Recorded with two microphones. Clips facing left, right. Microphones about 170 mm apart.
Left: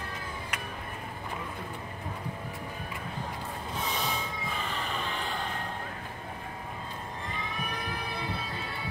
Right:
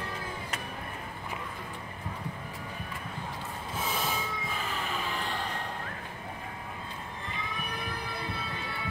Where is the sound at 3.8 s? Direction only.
Centre (ahead or behind).